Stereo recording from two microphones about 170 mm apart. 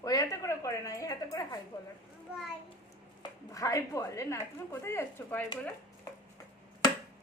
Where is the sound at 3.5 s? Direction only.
20° left (ahead or behind).